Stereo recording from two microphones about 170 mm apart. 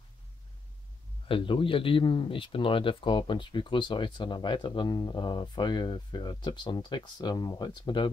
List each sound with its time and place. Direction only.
1.3 s speech: 30° left (ahead or behind)